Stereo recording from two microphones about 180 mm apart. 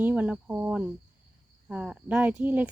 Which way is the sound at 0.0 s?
10° right (ahead or behind).